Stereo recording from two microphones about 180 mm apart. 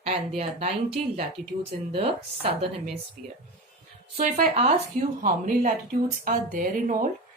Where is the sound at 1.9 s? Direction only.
30° right (ahead or behind).